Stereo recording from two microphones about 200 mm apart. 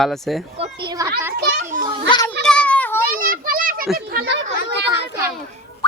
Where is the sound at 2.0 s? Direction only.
20° left (ahead or behind).